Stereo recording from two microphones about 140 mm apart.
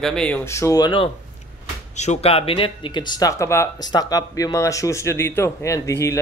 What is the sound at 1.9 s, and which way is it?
Speech, 55° left (ahead or behind).